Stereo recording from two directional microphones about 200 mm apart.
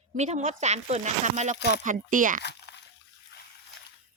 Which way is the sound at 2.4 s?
60° left (ahead or behind).